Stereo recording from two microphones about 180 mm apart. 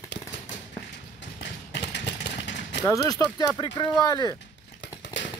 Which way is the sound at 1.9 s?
75° left (ahead or behind).